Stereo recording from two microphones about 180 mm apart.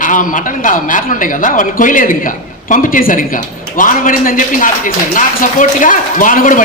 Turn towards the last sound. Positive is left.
turn(degrees=45)  # may be behind; listen again after turning